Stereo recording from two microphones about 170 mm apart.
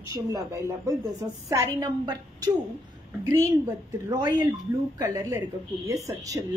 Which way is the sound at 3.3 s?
15° right (ahead or behind).